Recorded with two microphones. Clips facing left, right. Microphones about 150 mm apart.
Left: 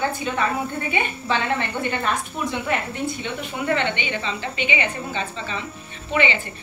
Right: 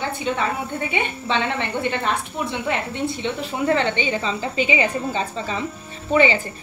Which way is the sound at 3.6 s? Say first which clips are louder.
Right 3 dB; 35° right (ahead or behind).